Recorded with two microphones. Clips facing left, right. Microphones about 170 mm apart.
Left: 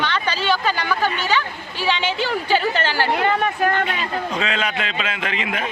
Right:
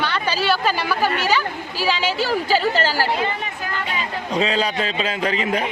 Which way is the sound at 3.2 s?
65° left (ahead or behind).